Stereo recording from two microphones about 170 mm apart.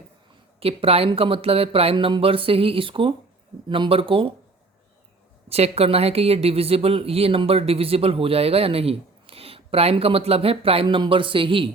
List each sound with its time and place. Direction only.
0.6 s speech: 35° right (ahead or behind)
5.5 s speech: 35° right (ahead or behind)